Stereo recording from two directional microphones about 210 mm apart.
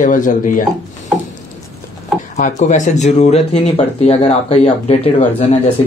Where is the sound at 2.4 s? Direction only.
35° left (ahead or behind).